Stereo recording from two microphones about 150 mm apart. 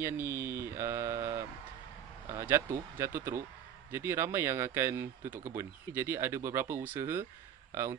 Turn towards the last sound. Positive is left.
turn(degrees=-15)  # may be behind; listen again after turning